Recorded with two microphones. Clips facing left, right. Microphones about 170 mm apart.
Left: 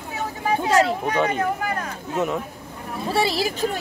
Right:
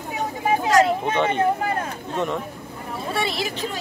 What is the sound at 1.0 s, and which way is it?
Speech, 25° right (ahead or behind).